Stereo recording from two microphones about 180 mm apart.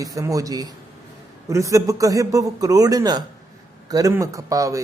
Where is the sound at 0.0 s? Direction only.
20° right (ahead or behind).